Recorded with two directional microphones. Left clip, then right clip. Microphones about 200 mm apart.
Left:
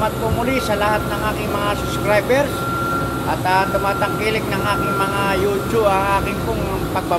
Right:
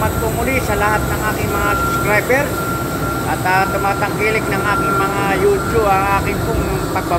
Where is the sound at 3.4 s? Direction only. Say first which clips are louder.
Right 2 dB; 15° left (ahead or behind).